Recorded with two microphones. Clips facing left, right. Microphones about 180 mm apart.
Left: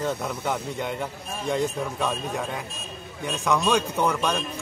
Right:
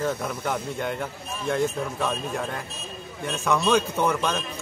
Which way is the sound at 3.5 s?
15° left (ahead or behind).